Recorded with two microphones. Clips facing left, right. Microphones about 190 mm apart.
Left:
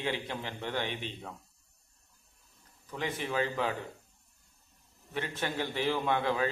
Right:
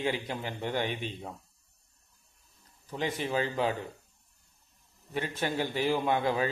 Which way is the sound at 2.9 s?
30° right (ahead or behind).